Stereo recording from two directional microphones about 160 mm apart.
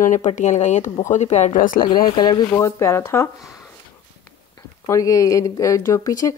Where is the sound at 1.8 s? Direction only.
30° left (ahead or behind).